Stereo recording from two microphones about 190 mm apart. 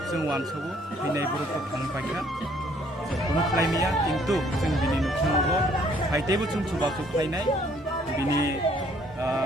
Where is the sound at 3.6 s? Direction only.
15° right (ahead or behind).